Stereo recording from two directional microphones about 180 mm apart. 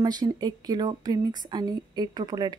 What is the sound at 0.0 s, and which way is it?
Speech, 20° right (ahead or behind).